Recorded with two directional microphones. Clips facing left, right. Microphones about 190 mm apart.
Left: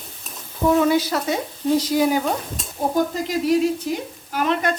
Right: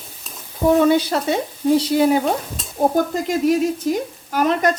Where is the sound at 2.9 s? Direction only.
50° right (ahead or behind).